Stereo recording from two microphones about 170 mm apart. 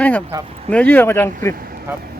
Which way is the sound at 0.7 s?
10° left (ahead or behind).